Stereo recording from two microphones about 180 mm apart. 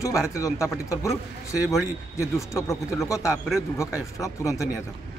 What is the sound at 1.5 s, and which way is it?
Speech, 10° right (ahead or behind).